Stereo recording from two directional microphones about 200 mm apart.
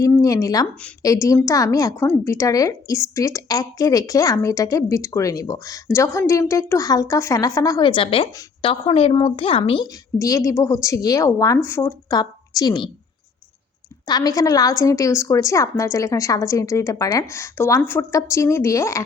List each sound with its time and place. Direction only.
0.0 s a woman's voice: 15° left (ahead or behind)
14.0 s a woman's voice: 20° left (ahead or behind)